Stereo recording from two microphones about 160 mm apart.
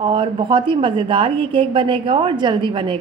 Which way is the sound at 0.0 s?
30° right (ahead or behind).